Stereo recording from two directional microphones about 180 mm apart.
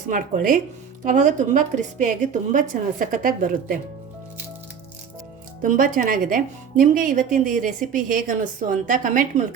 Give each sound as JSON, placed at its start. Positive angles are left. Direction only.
{"t": 0.1, "sound": "a woman's voice", "side_deg": -45}
{"t": 5.6, "sound": "a woman's voice", "side_deg": -50}